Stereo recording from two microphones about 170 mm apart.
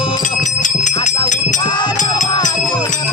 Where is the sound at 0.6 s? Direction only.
45° left (ahead or behind).